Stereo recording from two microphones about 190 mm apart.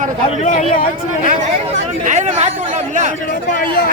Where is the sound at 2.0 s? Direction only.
40° right (ahead or behind).